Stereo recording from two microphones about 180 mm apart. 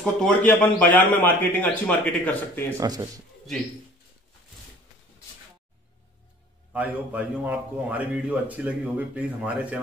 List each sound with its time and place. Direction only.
0.0 s a man's voice: 5° left (ahead or behind)
2.8 s speech: 20° right (ahead or behind)
6.7 s a man's voice: 10° right (ahead or behind)